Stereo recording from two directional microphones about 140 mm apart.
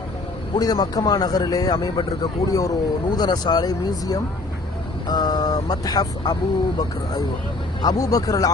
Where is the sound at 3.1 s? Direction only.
30° left (ahead or behind).